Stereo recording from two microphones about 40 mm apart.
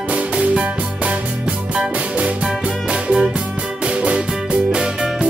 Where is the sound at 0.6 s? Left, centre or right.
Right.